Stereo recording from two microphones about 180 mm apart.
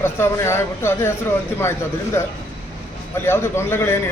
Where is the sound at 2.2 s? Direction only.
15° left (ahead or behind).